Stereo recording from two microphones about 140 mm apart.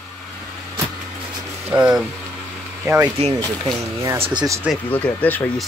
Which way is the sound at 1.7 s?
10° right (ahead or behind).